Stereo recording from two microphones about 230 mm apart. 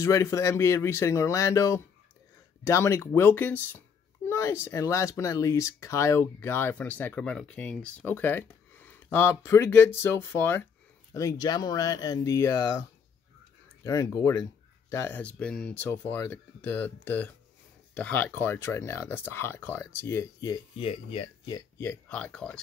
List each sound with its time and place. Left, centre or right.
0.0 s speech: centre
13.8 s speech: centre
20.8 s speech: left
21.5 s speech: centre